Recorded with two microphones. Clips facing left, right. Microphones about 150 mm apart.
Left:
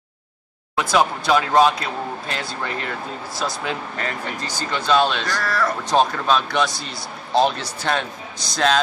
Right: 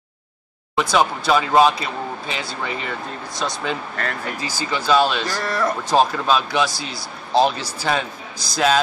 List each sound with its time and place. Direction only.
0.7 s speech: centre (ahead or behind)
5.3 s speech: 25° right (ahead or behind)
5.9 s speech: 5° right (ahead or behind)